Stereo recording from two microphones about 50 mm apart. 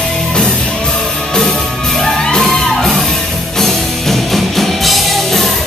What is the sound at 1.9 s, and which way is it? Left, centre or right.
Music, centre.